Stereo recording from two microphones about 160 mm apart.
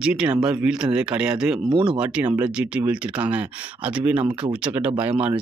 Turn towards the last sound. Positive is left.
turn(degrees=-10)  # may be behind; listen again after turning